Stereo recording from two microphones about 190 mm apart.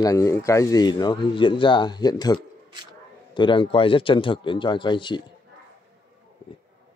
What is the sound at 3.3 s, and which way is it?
Speech, 25° left (ahead or behind).